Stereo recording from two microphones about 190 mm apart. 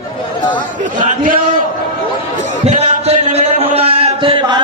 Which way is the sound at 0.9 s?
45° right (ahead or behind).